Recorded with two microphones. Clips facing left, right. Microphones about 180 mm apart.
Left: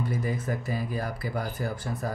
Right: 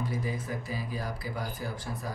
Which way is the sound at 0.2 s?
50° left (ahead or behind).